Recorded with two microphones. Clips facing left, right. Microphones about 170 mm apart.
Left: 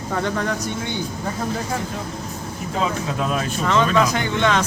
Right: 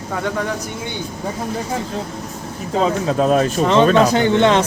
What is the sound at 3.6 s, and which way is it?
Speech, 30° right (ahead or behind).